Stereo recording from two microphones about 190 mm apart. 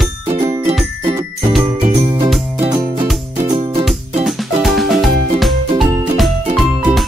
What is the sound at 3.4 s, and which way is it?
Music, 25° right (ahead or behind).